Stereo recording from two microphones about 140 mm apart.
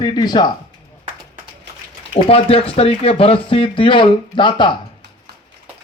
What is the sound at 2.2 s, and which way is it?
Speech, 45° left (ahead or behind).